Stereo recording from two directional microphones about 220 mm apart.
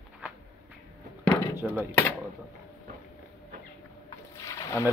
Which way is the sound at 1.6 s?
Centre (ahead or behind).